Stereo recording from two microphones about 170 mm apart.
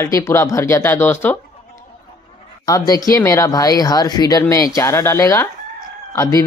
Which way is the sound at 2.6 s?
20° left (ahead or behind).